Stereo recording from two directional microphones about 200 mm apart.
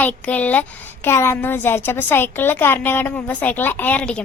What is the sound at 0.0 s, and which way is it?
A woman's voice, 10° left (ahead or behind).